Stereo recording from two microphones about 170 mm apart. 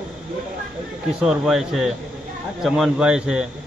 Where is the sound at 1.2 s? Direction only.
Centre (ahead or behind).